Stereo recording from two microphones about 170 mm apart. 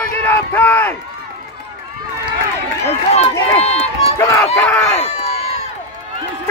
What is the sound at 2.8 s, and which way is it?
Speech, 35° left (ahead or behind).